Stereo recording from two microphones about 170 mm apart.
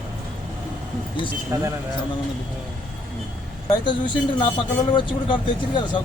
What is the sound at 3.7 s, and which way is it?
Speech, 30° left (ahead or behind).